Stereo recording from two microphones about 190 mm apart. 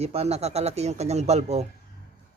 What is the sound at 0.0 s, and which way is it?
A man's voice, 35° right (ahead or behind).